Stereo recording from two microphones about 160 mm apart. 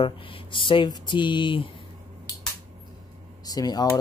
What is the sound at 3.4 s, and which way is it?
Speech, 25° left (ahead or behind).